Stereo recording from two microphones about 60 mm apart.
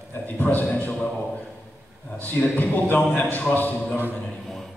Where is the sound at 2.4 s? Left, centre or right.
Left.